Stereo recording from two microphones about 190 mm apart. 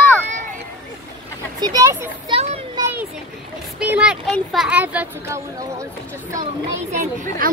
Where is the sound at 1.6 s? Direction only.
20° right (ahead or behind).